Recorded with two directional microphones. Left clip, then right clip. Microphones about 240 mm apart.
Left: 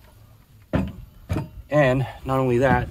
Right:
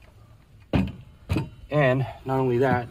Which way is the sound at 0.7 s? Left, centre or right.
Right.